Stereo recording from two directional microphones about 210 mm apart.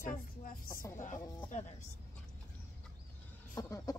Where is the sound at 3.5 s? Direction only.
15° left (ahead or behind).